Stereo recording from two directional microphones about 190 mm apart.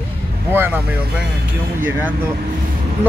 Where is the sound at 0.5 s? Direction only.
10° right (ahead or behind).